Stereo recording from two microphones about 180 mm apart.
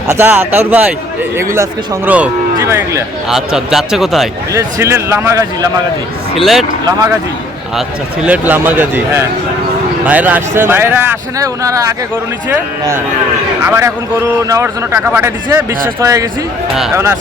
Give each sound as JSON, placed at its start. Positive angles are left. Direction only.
{"t": 0.1, "sound": "a man's voice", "side_deg": -10}
{"t": 2.0, "sound": "a man's voice", "side_deg": -5}
{"t": 3.2, "sound": "speech", "side_deg": 0}
{"t": 4.5, "sound": "a man's voice", "side_deg": -15}
{"t": 6.3, "sound": "speech", "side_deg": 0}
{"t": 7.8, "sound": "a man's voice", "side_deg": -5}